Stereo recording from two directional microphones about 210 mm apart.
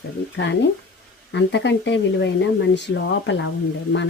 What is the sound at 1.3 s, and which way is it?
Speech, 60° left (ahead or behind).